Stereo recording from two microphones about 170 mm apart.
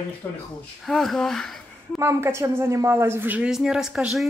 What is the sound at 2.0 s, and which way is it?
Speech, 15° right (ahead or behind).